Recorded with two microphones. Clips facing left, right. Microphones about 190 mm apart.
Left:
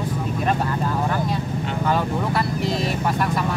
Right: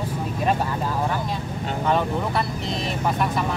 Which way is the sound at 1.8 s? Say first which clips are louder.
Even; centre (ahead or behind).